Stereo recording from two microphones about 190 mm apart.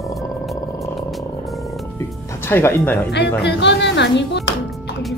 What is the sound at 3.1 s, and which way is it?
Speech, 65° left (ahead or behind).